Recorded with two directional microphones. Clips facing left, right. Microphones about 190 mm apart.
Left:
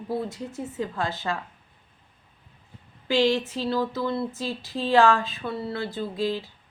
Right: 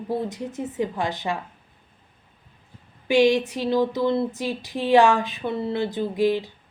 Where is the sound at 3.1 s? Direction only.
15° right (ahead or behind).